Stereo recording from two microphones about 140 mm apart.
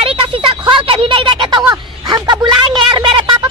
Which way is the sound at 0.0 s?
40° right (ahead or behind).